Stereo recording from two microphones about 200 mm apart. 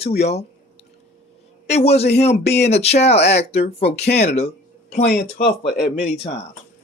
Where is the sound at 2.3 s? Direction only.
55° left (ahead or behind).